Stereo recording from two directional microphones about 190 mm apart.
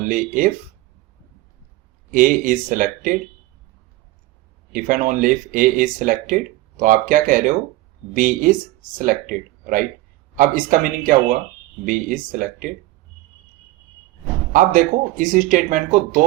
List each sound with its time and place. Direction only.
0.0 s speech: 45° right (ahead or behind)
2.0 s speech: 45° right (ahead or behind)
4.7 s speech: 45° right (ahead or behind)
14.5 s speech: 45° right (ahead or behind)